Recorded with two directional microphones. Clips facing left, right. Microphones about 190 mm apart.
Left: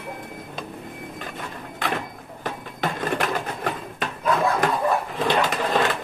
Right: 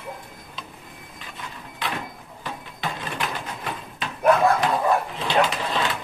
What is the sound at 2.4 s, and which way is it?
Sewing machine, 50° left (ahead or behind).